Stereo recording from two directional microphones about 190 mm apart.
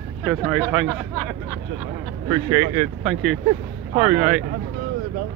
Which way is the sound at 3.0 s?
Centre (ahead or behind).